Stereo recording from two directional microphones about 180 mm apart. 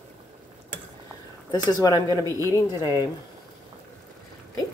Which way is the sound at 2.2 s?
20° right (ahead or behind).